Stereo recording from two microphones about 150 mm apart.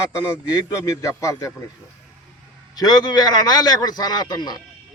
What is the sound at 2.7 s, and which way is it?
A man's voice, 25° left (ahead or behind).